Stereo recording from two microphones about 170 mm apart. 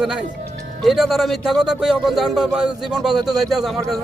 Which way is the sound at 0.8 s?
Centre (ahead or behind).